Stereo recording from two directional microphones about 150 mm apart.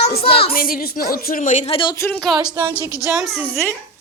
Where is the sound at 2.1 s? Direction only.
5° left (ahead or behind).